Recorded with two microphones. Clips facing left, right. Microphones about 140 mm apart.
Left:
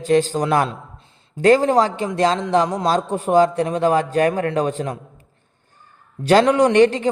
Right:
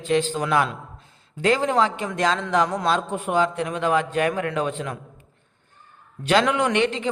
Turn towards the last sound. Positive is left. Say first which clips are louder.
# left 8 dB
turn(degrees=40)  # may be behind; listen again after turning